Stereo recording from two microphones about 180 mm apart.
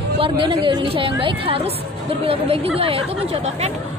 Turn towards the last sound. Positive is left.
turn(degrees=-35)  # may be behind; listen again after turning